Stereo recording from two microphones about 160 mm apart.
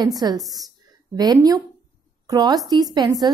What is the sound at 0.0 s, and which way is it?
A woman's voice, 25° right (ahead or behind).